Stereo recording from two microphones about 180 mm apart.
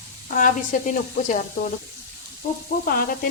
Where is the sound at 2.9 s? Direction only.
55° left (ahead or behind).